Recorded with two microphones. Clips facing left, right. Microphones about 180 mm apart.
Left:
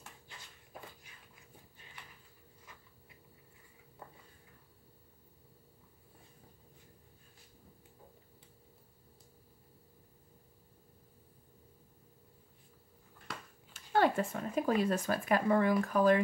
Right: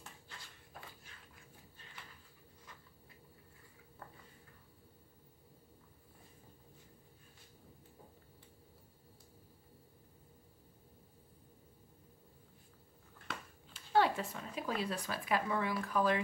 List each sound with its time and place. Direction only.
13.7 s speech: 50° left (ahead or behind)